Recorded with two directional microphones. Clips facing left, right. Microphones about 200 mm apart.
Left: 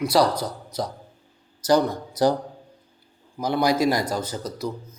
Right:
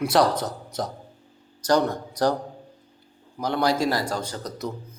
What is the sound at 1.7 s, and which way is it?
Speech, 10° left (ahead or behind).